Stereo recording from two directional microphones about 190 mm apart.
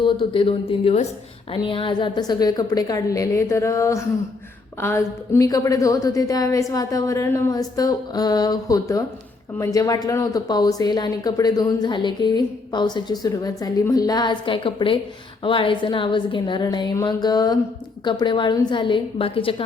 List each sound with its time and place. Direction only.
0.0 s a woman's voice: 25° left (ahead or behind)